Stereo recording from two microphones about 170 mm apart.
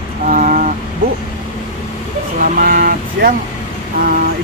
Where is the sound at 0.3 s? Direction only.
50° right (ahead or behind).